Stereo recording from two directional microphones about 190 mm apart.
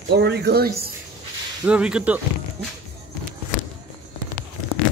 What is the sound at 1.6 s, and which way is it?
Speech, 5° right (ahead or behind).